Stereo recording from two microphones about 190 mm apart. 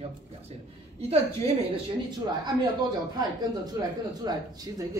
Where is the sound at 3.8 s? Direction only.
15° right (ahead or behind).